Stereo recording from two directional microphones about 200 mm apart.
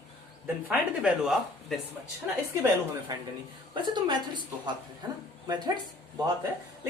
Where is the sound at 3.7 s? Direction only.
20° right (ahead or behind).